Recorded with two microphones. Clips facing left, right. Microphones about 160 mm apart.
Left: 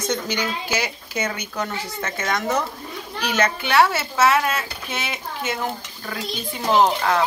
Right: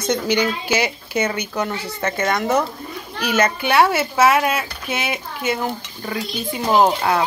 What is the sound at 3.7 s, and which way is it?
Speech, 10° right (ahead or behind).